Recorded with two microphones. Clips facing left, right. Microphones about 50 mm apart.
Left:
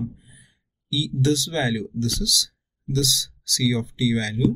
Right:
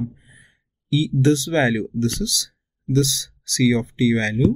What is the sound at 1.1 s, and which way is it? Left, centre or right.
Speech, right.